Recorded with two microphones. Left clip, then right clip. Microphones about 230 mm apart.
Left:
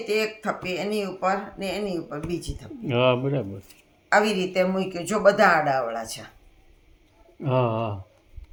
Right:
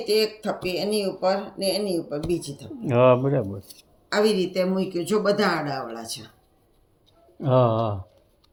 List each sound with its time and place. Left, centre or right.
0.1 s speech: left
2.9 s speech: centre
4.1 s speech: left
7.3 s speech: centre